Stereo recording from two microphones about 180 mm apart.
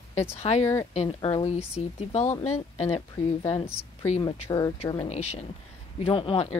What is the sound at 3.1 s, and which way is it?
Speech, 25° left (ahead or behind).